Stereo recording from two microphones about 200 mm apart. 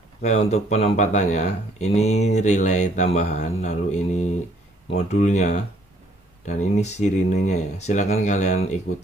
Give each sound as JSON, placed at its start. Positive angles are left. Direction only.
{"t": 0.2, "sound": "speech", "side_deg": 35}